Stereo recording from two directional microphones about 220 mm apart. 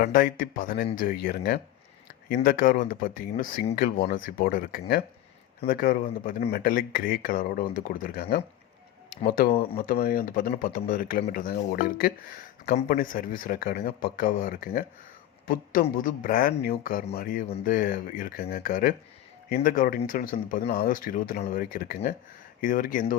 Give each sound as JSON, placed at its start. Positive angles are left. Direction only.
{"t": 0.0, "sound": "speech", "side_deg": 40}